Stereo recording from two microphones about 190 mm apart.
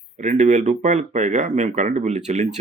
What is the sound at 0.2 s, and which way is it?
Speech, 35° right (ahead or behind).